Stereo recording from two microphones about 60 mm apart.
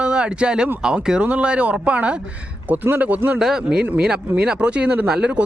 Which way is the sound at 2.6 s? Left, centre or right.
Right.